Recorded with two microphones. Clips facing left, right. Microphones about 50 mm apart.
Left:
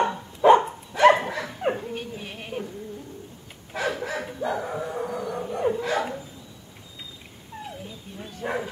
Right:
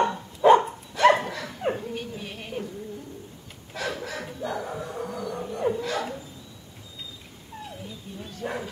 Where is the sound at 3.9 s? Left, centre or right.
Centre.